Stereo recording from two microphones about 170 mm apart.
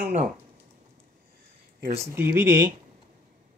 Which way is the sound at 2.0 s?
15° right (ahead or behind).